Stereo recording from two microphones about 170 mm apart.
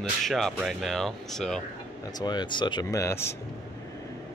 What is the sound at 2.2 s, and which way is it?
Speech, 25° left (ahead or behind).